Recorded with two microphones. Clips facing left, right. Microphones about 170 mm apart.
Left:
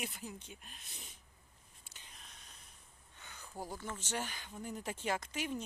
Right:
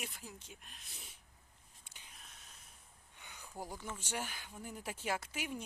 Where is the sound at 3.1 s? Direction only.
15° right (ahead or behind).